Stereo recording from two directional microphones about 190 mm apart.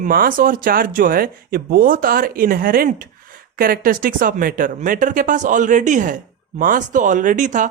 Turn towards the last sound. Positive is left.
turn(degrees=-40)  # may be behind; listen again after turning